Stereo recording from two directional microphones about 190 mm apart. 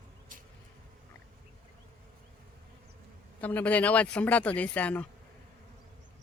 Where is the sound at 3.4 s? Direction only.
10° left (ahead or behind).